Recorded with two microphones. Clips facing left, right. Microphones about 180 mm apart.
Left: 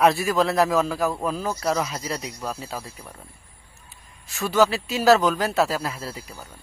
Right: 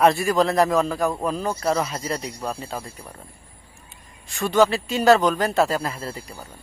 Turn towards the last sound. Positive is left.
turn(degrees=5)  # may be behind; listen again after turning